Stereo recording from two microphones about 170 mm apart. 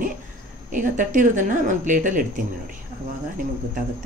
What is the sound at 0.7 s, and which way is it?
Speech, 50° right (ahead or behind).